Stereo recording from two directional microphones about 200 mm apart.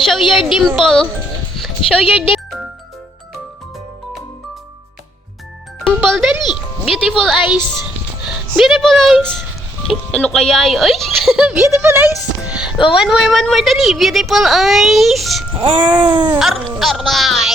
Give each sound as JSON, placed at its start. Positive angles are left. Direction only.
{"t": 0.0, "sound": "speech", "side_deg": 0}
{"t": 5.8, "sound": "music", "side_deg": 0}
{"t": 6.8, "sound": "a woman's voice", "side_deg": 0}
{"t": 15.6, "sound": "a sound", "side_deg": -25}
{"t": 16.3, "sound": "speech", "side_deg": 0}